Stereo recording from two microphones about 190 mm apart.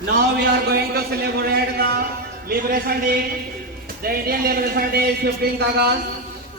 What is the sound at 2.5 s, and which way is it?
Speech, 50° right (ahead or behind).